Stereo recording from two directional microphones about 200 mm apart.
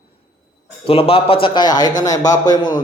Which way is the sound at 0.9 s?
30° left (ahead or behind).